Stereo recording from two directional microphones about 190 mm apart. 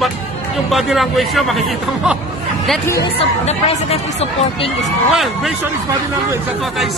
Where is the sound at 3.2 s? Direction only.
35° left (ahead or behind).